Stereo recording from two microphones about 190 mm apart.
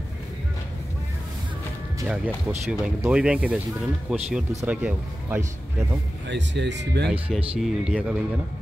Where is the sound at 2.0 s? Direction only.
5° right (ahead or behind).